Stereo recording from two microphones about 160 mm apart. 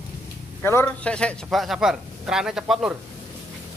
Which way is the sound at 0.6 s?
15° left (ahead or behind).